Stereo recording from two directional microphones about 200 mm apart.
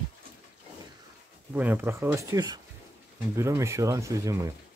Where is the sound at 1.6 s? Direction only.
10° right (ahead or behind).